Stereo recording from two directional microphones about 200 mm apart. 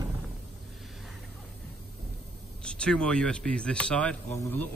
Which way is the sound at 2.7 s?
5° left (ahead or behind).